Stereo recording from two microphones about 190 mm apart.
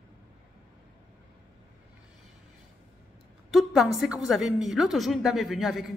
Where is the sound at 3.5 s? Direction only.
Centre (ahead or behind).